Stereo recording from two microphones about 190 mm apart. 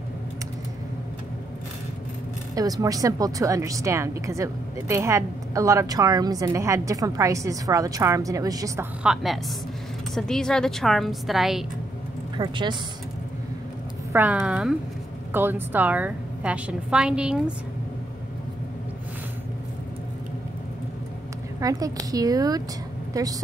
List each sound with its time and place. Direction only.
2.5 s speech: 20° right (ahead or behind)
9.0 s a woman's voice: centre (ahead or behind)
12.4 s speech: 25° right (ahead or behind)
14.1 s speech: 10° right (ahead or behind)
21.5 s speech: 20° right (ahead or behind)